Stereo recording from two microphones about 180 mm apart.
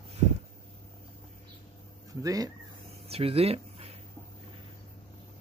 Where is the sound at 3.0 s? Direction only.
35° right (ahead or behind).